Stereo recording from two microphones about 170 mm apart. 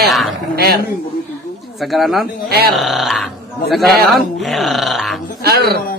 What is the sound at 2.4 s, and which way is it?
Speech, 65° right (ahead or behind).